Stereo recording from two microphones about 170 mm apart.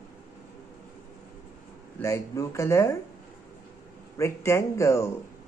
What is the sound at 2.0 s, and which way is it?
Speech, 15° left (ahead or behind).